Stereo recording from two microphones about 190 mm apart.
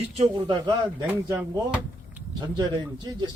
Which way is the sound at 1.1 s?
15° right (ahead or behind).